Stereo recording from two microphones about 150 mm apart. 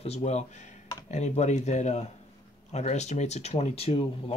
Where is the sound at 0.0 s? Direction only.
45° left (ahead or behind).